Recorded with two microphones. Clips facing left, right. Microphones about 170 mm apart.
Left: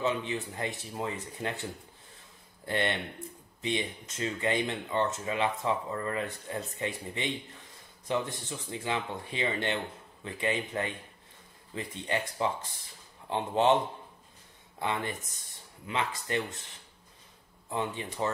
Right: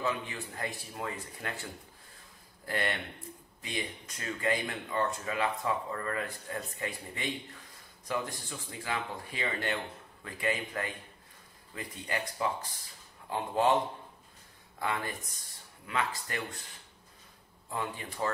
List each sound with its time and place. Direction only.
0.0 s speech: 20° left (ahead or behind)
14.8 s speech: 20° left (ahead or behind)
17.6 s speech: 20° left (ahead or behind)